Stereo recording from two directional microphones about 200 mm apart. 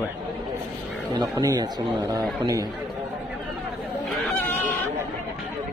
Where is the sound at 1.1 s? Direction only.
20° right (ahead or behind).